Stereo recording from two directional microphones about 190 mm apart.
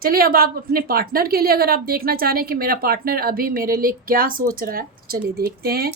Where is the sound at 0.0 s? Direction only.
50° right (ahead or behind).